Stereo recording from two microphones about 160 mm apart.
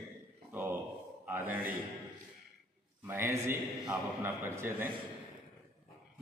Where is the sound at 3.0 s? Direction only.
15° right (ahead or behind).